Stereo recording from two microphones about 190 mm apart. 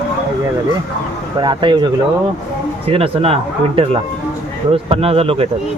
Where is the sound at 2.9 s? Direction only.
30° right (ahead or behind).